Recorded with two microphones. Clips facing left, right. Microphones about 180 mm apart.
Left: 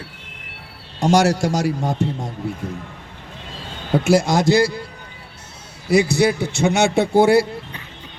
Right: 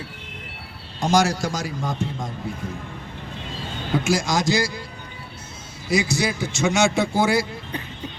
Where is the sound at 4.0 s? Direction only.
60° left (ahead or behind).